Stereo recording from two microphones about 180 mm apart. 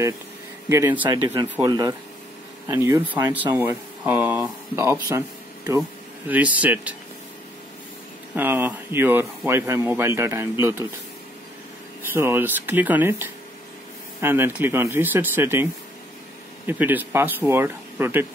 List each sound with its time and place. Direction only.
0.7 s speech: 15° right (ahead or behind)
5.1 s a sound: 15° right (ahead or behind)
5.8 s speech: 10° right (ahead or behind)
8.4 s speech: 10° right (ahead or behind)
12.1 s speech: 15° right (ahead or behind)